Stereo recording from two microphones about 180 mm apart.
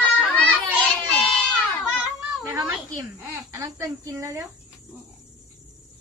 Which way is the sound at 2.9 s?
15° right (ahead or behind).